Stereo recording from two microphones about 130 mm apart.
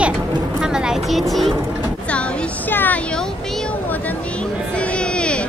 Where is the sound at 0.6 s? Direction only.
5° right (ahead or behind).